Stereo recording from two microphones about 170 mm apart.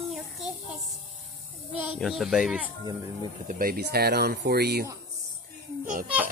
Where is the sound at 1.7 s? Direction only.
5° right (ahead or behind).